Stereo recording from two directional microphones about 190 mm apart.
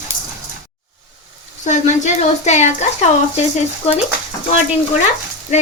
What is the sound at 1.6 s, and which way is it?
Speech, 40° left (ahead or behind).